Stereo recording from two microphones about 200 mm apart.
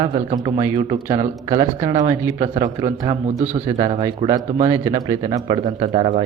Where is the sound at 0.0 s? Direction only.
30° right (ahead or behind).